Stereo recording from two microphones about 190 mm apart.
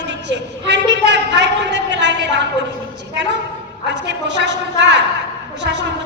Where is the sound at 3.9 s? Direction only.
65° right (ahead or behind).